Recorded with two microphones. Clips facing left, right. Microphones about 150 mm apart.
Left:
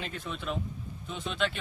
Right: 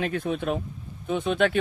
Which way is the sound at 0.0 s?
60° right (ahead or behind).